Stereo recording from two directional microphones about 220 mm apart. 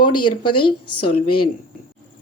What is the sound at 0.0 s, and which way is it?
Speech, 20° left (ahead or behind).